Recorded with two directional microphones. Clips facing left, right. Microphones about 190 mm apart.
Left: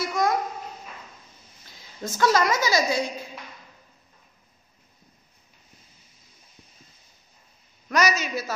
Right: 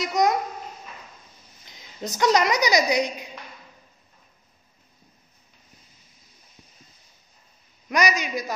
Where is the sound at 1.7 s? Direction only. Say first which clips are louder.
Right 1 dB; 20° right (ahead or behind).